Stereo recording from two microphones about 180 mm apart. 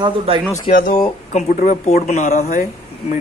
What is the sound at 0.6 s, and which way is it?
Speech, 50° left (ahead or behind).